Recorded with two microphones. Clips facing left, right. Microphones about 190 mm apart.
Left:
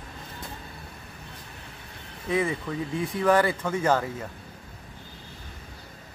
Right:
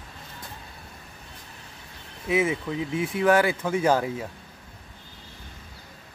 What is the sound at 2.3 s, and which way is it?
Speech, 5° right (ahead or behind).